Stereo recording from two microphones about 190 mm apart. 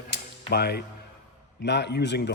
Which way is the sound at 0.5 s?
60° left (ahead or behind).